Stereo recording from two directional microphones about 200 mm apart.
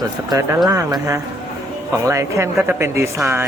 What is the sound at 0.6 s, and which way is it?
Speech, 15° right (ahead or behind).